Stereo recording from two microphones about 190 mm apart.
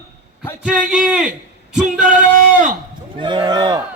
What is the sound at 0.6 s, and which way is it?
Speech, 5° right (ahead or behind).